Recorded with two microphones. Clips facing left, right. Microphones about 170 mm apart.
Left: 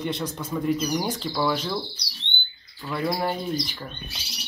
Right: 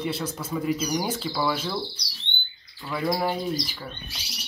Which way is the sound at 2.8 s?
5° right (ahead or behind).